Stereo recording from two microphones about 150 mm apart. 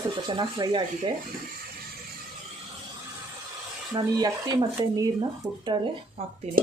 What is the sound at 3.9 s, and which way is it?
Speech, 25° right (ahead or behind).